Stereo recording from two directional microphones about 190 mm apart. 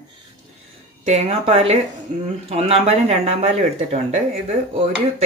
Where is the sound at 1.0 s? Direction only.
35° right (ahead or behind).